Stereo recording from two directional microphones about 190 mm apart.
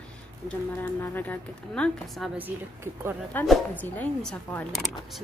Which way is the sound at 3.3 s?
5° left (ahead or behind).